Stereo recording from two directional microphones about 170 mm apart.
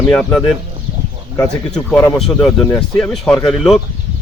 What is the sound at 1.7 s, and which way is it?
Speech, 5° left (ahead or behind).